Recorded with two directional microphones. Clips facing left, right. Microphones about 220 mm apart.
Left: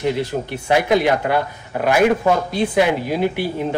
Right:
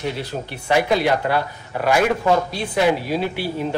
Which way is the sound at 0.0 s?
20° left (ahead or behind).